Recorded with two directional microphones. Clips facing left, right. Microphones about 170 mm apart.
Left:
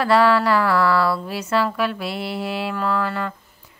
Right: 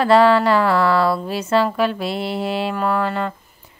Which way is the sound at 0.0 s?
25° right (ahead or behind).